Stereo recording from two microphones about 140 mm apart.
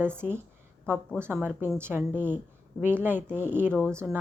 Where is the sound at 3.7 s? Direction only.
10° left (ahead or behind).